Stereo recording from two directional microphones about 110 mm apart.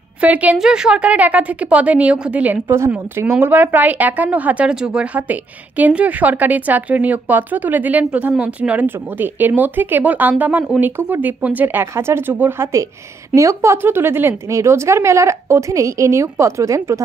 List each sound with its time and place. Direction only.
0.2 s a woman's voice: 15° right (ahead or behind)